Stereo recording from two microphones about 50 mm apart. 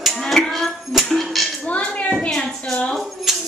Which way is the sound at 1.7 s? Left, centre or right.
Left.